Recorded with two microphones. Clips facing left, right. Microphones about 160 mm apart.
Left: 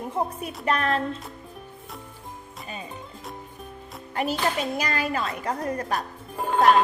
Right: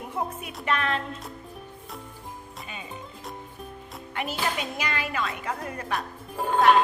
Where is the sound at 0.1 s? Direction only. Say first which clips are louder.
Left 3 dB; 35° left (ahead or behind).